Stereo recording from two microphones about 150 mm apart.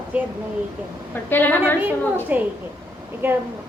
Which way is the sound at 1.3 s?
15° left (ahead or behind).